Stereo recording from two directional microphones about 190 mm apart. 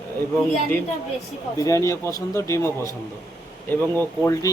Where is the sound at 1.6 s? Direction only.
15° left (ahead or behind).